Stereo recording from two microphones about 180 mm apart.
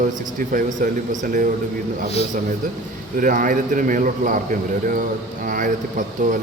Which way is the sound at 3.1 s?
50° right (ahead or behind).